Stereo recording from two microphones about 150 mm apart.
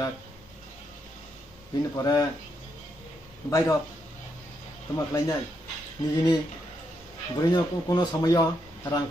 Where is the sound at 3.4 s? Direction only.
20° left (ahead or behind).